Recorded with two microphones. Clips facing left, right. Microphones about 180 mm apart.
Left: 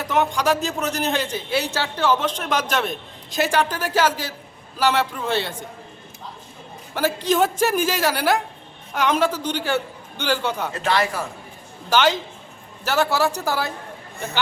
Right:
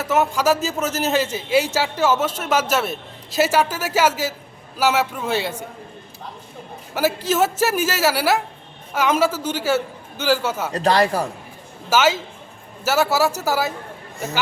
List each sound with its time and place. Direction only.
0.0 s a man's voice: 5° right (ahead or behind)
6.9 s a man's voice: 5° right (ahead or behind)
10.7 s speech: 40° right (ahead or behind)
11.9 s a man's voice: 5° right (ahead or behind)